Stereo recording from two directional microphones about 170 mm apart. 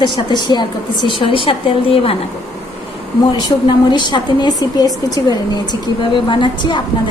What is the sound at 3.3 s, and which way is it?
A woman's voice, 25° left (ahead or behind).